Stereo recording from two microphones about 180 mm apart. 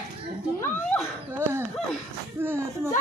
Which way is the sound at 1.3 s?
15° right (ahead or behind).